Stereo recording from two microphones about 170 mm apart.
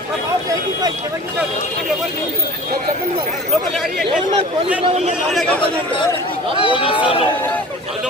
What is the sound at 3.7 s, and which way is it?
Speech, centre (ahead or behind).